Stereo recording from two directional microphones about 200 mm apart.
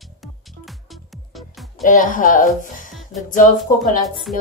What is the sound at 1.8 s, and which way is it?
Music, 40° left (ahead or behind).